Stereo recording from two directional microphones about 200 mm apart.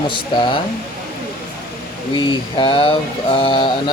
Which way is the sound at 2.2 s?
25° left (ahead or behind).